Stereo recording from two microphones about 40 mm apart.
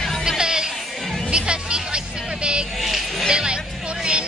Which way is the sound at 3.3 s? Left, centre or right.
Right.